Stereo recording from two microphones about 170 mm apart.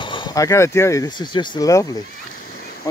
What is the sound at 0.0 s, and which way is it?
Speech, 30° left (ahead or behind).